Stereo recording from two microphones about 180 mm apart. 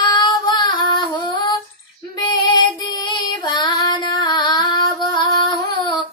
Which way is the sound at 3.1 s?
25° left (ahead or behind).